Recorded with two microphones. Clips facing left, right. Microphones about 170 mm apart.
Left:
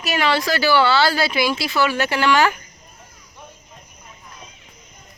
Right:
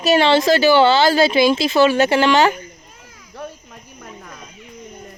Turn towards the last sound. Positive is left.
turn(degrees=-90)